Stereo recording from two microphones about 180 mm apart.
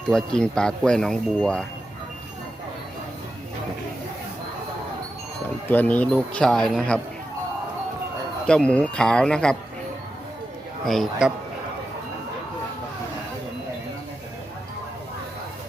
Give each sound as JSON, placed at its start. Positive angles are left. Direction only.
{"t": 0.0, "sound": "speech", "side_deg": 5}
{"t": 5.6, "sound": "speech", "side_deg": 10}
{"t": 8.4, "sound": "speech", "side_deg": 5}
{"t": 10.8, "sound": "speech", "side_deg": 0}